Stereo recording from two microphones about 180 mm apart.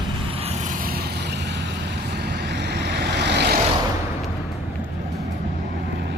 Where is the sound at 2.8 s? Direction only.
70° right (ahead or behind).